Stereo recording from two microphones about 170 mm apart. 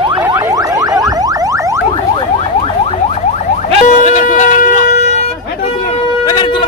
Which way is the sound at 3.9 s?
45° left (ahead or behind).